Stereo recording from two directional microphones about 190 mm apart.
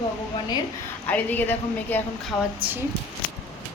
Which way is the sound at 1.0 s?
10° left (ahead or behind).